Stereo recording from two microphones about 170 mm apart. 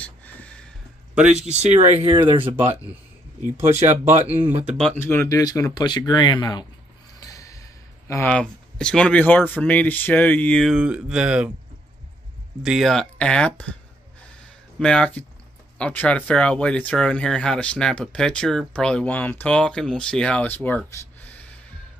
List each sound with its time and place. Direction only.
0.0 s a sound: 10° left (ahead or behind)
1.1 s speech: 5° right (ahead or behind)
1.5 s speech: 40° right (ahead or behind)
2.0 s speech: 30° right (ahead or behind)
2.5 s speech: 10° right (ahead or behind)
4.1 s speech: 45° right (ahead or behind)
4.7 s speech: 10° left (ahead or behind); by 6.6 s 25° left (ahead or behind)
7.2 s a sound: 20° left (ahead or behind)
8.3 s speech: 5° left (ahead or behind)
12.6 s speech: centre (ahead or behind)
14.8 s speech: 5° left (ahead or behind)